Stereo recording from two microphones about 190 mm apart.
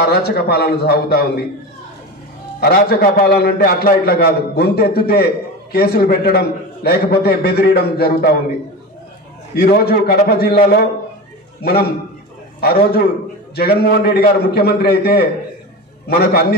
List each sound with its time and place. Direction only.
0.1 s a man's voice: 55° left (ahead or behind)
2.6 s a man's voice: 55° left (ahead or behind)
9.6 s a man's voice: 55° left (ahead or behind)